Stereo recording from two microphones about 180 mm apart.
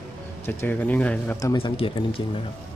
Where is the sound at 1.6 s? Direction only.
30° left (ahead or behind).